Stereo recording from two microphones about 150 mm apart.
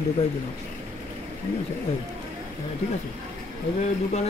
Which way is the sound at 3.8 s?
45° left (ahead or behind).